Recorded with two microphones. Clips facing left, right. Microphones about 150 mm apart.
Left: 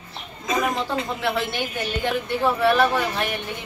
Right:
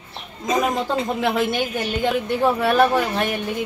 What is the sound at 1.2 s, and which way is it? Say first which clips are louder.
Speech: right 4 dB; 15° right (ahead or behind).